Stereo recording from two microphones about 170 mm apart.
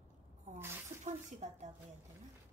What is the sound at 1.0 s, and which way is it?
Speech, 45° right (ahead or behind).